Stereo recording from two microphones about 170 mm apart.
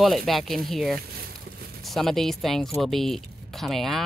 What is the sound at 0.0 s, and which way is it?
Speech, centre (ahead or behind).